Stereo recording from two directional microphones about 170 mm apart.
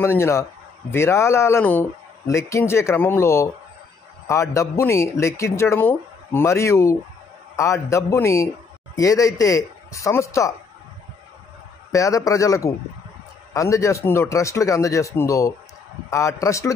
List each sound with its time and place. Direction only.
0.0 s speech: 15° left (ahead or behind)
11.9 s speech: 20° left (ahead or behind)